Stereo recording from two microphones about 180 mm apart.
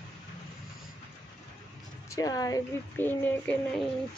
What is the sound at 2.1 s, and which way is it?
A woman's voice, 20° left (ahead or behind).